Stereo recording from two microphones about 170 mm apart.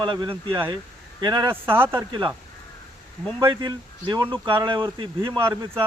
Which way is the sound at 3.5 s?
25° right (ahead or behind).